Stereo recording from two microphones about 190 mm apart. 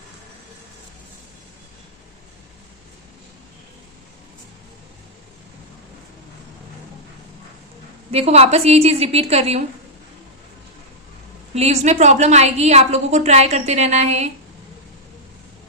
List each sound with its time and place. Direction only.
8.1 s a woman's voice: 35° right (ahead or behind)
11.5 s a woman's voice: 35° right (ahead or behind)